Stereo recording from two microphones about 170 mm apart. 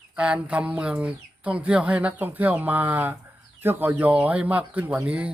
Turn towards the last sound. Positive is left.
turn(degrees=-5)  # may be behind; listen again after turning